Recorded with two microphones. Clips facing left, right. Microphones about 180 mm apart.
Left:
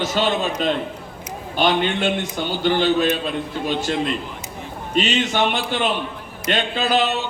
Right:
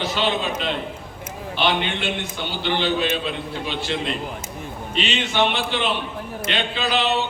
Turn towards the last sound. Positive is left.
turn(degrees=45)  # may be behind; listen again after turning